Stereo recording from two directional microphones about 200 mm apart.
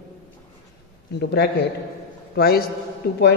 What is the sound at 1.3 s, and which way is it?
A man's voice, 55° left (ahead or behind).